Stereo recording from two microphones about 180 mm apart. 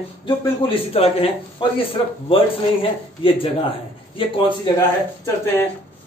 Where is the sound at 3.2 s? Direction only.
30° left (ahead or behind).